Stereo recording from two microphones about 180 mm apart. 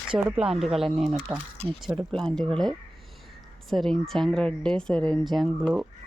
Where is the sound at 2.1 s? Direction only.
5° left (ahead or behind).